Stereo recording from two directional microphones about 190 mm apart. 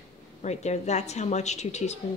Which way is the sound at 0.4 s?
35° left (ahead or behind).